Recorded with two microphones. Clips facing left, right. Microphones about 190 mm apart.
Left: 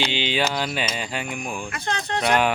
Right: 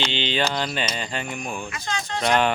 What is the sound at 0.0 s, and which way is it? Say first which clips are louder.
Speech: left 1 dB; 10° left (ahead or behind).